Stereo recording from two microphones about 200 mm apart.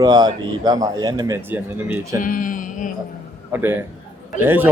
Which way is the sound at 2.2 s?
40° left (ahead or behind).